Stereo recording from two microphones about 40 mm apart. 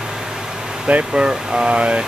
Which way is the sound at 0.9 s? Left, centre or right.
Right.